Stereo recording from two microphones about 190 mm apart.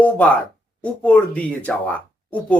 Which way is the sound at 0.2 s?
5° left (ahead or behind).